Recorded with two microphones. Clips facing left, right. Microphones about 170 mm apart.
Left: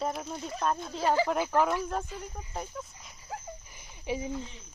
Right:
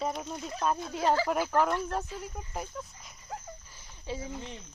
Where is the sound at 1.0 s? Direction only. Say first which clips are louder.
Left 1 dB; 15° left (ahead or behind).